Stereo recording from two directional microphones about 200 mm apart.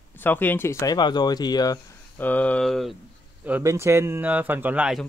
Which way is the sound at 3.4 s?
10° right (ahead or behind).